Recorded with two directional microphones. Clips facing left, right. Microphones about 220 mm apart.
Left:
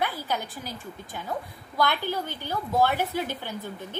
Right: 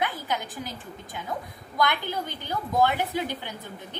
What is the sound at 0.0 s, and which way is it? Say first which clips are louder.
A woman's voice: even; 15° right (ahead or behind).